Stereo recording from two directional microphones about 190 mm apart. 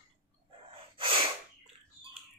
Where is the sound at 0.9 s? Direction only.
25° right (ahead or behind).